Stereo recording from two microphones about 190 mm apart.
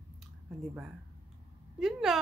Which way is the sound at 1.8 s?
Centre (ahead or behind).